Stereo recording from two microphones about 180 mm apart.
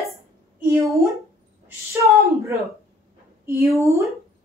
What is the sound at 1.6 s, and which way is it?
Speech, 15° right (ahead or behind).